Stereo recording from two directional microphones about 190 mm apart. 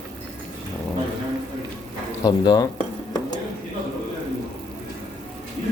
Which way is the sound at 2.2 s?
20° left (ahead or behind).